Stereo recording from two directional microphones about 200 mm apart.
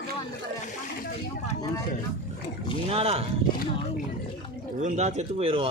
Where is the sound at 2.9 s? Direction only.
30° right (ahead or behind).